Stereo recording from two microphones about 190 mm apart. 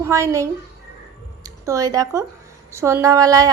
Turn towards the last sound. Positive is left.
turn(degrees=-20)  # may be behind; listen again after turning